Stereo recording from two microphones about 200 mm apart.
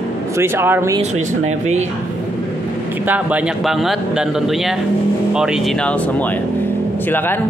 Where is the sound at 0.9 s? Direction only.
35° right (ahead or behind).